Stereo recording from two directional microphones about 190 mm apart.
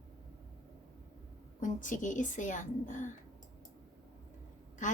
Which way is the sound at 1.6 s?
40° left (ahead or behind).